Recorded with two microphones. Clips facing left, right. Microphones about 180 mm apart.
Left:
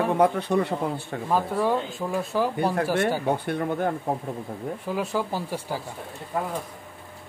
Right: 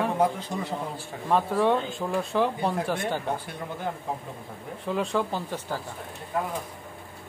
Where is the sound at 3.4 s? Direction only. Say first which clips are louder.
Left 8 dB; 60° left (ahead or behind).